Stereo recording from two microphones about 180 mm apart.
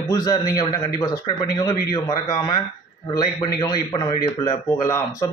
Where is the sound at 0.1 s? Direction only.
20° left (ahead or behind).